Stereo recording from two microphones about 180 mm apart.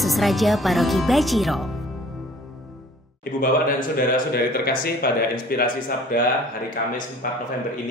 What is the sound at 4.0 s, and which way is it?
Speech, 55° left (ahead or behind).